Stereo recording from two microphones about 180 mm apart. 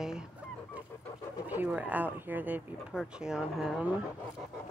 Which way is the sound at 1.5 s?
10° right (ahead or behind).